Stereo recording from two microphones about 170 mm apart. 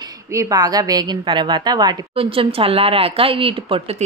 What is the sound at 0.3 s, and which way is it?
A woman's voice, 20° right (ahead or behind).